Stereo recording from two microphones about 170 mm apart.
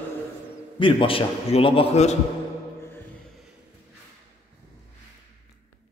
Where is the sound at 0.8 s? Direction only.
30° left (ahead or behind).